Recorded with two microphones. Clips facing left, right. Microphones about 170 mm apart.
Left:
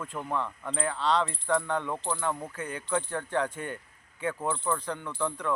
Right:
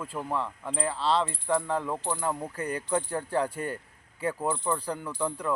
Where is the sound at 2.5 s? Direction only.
35° right (ahead or behind).